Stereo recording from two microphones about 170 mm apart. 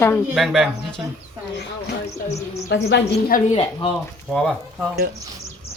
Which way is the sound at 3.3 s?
55° left (ahead or behind).